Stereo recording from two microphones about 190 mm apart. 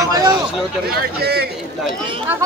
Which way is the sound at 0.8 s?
55° right (ahead or behind).